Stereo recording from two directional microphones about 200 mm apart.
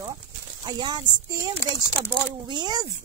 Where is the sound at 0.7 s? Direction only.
20° right (ahead or behind).